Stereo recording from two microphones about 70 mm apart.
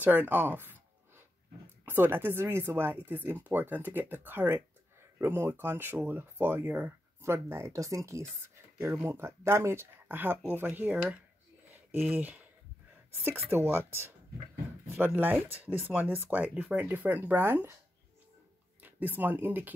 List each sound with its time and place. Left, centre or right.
0.0 s a sound: right
1.9 s speech: right
6.9 s speech: right
18.8 s speech: right